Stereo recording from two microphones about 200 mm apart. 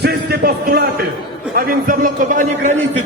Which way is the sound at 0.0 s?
50° right (ahead or behind).